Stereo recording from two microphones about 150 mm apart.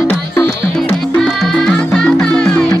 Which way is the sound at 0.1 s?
10° left (ahead or behind).